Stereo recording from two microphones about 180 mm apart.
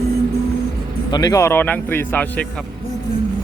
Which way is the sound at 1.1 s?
20° left (ahead or behind).